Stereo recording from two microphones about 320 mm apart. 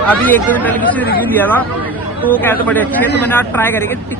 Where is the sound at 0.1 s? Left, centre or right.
Centre.